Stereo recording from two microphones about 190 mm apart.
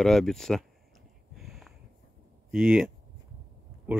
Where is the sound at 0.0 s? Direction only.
Centre (ahead or behind).